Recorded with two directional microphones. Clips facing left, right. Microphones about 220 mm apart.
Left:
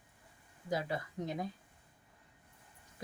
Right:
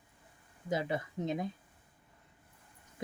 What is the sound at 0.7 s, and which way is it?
Speech, 20° right (ahead or behind).